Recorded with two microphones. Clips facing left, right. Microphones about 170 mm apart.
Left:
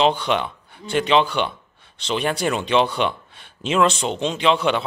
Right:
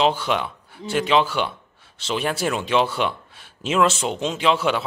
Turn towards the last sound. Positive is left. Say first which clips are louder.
# left 1 dB
turn(degrees=-5)  # may be behind; listen again after turning